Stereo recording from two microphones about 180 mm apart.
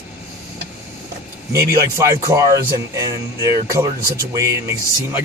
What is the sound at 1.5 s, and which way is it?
Speech, 15° right (ahead or behind).